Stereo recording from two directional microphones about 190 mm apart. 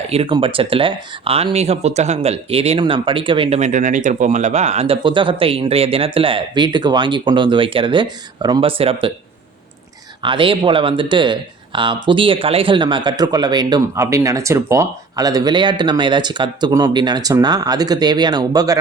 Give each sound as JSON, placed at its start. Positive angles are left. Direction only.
{"t": 0.1, "sound": "speech", "side_deg": -30}
{"t": 10.2, "sound": "speech", "side_deg": -25}